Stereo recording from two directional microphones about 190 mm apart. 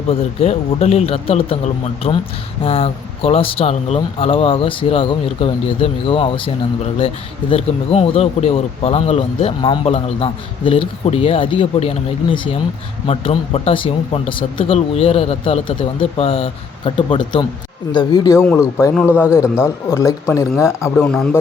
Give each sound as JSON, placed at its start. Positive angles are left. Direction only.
{"t": 0.1, "sound": "speech", "side_deg": 35}
{"t": 7.5, "sound": "speech", "side_deg": 30}